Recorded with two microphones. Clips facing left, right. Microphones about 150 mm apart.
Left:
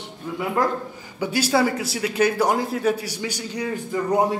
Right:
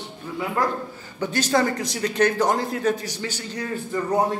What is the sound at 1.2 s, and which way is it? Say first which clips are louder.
Speech: left 1 dB; 10° left (ahead or behind).